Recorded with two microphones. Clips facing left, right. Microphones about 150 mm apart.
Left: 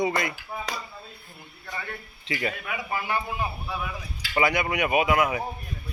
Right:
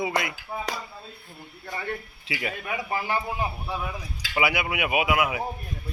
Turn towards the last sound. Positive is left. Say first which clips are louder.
# left 2 dB
turn(degrees=-10)  # may be behind; listen again after turning